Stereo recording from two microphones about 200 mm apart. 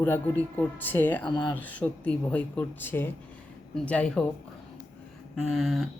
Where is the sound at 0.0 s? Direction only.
10° left (ahead or behind).